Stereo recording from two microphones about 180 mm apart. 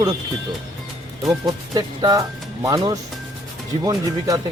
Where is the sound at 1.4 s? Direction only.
20° right (ahead or behind).